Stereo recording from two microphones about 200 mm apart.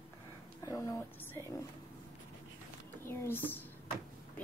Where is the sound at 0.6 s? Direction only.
15° left (ahead or behind).